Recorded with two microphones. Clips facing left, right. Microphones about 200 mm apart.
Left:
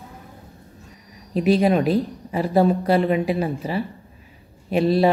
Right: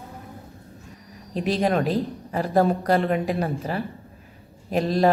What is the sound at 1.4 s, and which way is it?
A woman's voice, 10° left (ahead or behind).